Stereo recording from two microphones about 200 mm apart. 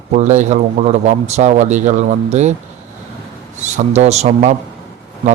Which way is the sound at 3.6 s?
35° right (ahead or behind).